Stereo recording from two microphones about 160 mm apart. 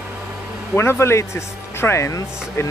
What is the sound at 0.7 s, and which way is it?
Speech, 15° left (ahead or behind).